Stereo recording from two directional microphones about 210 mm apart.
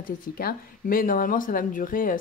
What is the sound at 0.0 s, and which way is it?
Speech, 45° left (ahead or behind).